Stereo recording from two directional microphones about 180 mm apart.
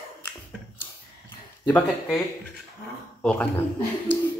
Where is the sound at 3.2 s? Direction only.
5° left (ahead or behind).